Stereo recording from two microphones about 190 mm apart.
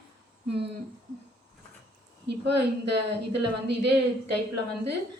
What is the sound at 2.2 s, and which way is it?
Speech, 65° right (ahead or behind).